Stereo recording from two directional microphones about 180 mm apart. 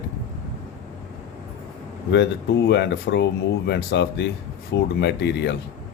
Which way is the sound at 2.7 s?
75° left (ahead or behind).